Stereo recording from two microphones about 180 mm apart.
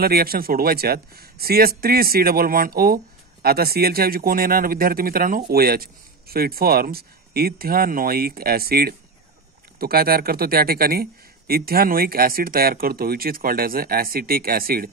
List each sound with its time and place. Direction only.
0.0 s speech: 55° right (ahead or behind)